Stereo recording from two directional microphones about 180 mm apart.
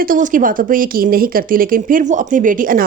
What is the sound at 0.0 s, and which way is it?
Speech, 50° right (ahead or behind).